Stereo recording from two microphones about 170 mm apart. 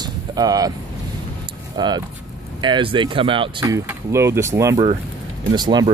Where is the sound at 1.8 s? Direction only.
25° right (ahead or behind).